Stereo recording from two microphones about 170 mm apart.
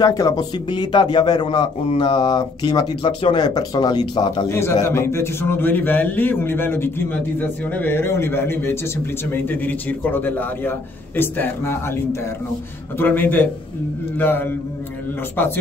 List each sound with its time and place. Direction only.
0.0 s a man's voice: 20° left (ahead or behind)